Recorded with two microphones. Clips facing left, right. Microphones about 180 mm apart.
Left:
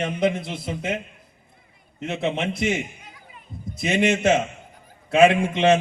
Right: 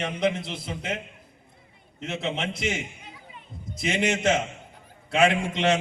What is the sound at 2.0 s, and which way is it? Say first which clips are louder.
Speech: left 5 dB; 55° left (ahead or behind).